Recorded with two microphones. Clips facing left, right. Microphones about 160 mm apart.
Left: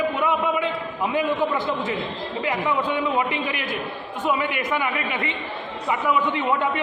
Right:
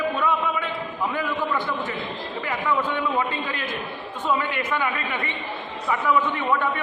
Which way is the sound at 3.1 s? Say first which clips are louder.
Left 2 dB; 15° left (ahead or behind).